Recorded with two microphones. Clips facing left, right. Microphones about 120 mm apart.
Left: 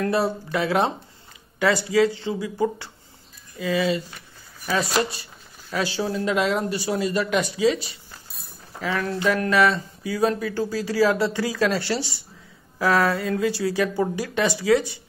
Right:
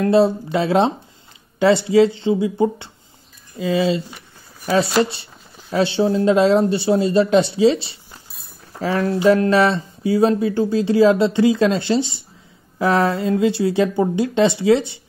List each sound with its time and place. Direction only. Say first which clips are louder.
0.0 s speech: right 8 dB; 25° right (ahead or behind)